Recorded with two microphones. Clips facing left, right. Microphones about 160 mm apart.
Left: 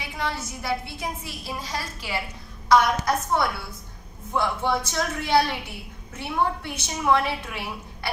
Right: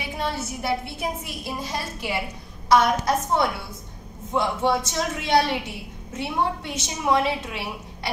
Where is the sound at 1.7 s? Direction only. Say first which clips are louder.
Right 3 dB; 20° right (ahead or behind).